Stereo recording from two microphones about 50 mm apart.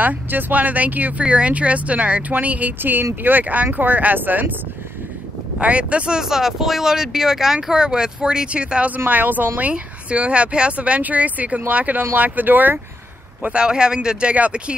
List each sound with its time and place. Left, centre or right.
0.0 s speech: right
1.2 s speech: right
2.8 s speech: right
5.6 s speech: right
6.2 s speech: centre
8.9 s speech: right
13.4 s speech: right